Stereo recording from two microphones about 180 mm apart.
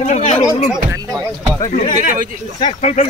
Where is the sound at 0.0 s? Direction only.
40° left (ahead or behind).